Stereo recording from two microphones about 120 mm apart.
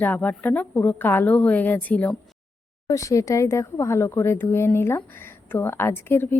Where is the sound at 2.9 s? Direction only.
25° left (ahead or behind).